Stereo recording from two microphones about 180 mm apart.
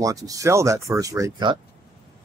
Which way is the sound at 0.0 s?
20° right (ahead or behind).